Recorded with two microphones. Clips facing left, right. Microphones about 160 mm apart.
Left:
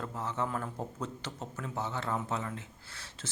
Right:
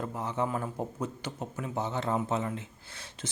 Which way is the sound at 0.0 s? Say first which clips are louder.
Right 3 dB; 15° right (ahead or behind).